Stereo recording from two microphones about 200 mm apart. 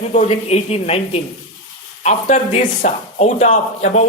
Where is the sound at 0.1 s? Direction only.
35° left (ahead or behind).